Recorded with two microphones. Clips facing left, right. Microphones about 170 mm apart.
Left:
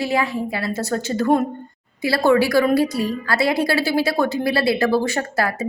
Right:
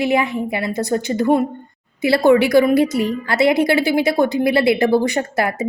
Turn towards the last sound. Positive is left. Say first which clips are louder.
# right 2 dB
turn(degrees=-20)  # may be behind; listen again after turning